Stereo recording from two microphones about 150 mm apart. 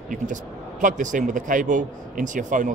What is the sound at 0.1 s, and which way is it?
Speech, 60° right (ahead or behind).